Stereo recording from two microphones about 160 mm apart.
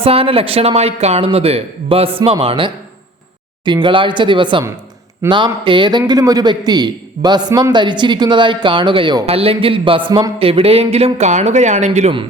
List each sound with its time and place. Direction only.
0.0 s a man's voice: 35° right (ahead or behind)
10.4 s speech: 35° right (ahead or behind)